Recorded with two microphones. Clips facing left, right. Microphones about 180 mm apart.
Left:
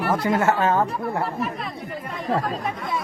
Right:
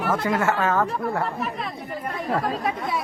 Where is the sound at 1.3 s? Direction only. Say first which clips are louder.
Left 1 dB; centre (ahead or behind).